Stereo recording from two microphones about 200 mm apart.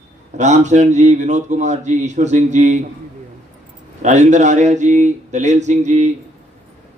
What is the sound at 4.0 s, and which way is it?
Speech, 35° right (ahead or behind).